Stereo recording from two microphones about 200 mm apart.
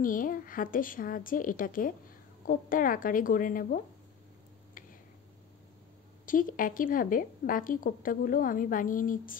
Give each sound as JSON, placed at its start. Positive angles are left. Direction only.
{"t": 0.0, "sound": "speech", "side_deg": 45}
{"t": 4.8, "sound": "tick", "side_deg": 45}
{"t": 6.2, "sound": "speech", "side_deg": 45}